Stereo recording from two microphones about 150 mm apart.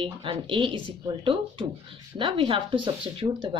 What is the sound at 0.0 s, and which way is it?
Speech, 35° right (ahead or behind).